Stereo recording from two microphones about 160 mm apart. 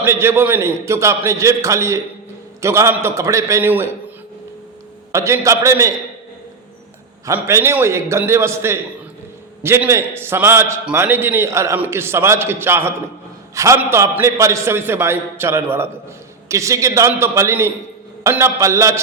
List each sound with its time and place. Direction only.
0.0 s a man's voice: 15° right (ahead or behind)
5.1 s a man's voice: 20° right (ahead or behind)
7.3 s a man's voice: 15° right (ahead or behind)